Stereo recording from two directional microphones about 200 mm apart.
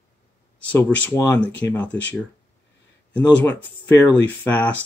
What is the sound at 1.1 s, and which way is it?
Speech, 10° left (ahead or behind).